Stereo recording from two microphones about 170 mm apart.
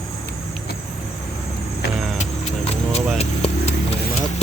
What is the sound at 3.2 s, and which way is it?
Vehicle, 40° left (ahead or behind).